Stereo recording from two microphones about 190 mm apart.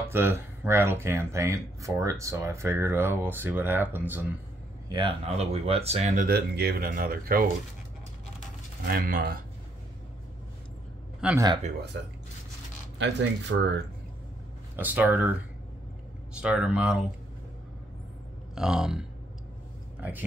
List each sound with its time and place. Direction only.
0.1 s speech: 10° right (ahead or behind)
4.8 s speech: 25° right (ahead or behind)
6.2 s speech: 55° right (ahead or behind)
8.8 s speech: 50° right (ahead or behind)
11.3 s speech: 20° right (ahead or behind)
13.0 s speech: 70° right (ahead or behind)
14.8 s speech: 10° right (ahead or behind)
16.3 s speech: 5° right (ahead or behind)
18.5 s speech: 5° right (ahead or behind)